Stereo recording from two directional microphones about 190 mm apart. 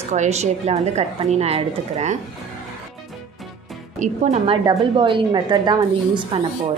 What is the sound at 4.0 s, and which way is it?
A woman's voice, 35° right (ahead or behind).